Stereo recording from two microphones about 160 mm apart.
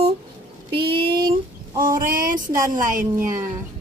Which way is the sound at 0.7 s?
30° right (ahead or behind).